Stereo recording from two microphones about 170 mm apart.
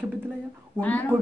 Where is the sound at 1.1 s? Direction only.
10° right (ahead or behind).